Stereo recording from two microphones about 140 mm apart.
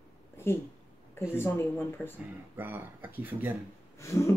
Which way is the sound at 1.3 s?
15° left (ahead or behind).